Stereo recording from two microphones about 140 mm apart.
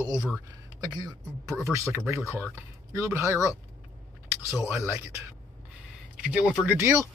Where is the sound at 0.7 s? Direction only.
30° right (ahead or behind).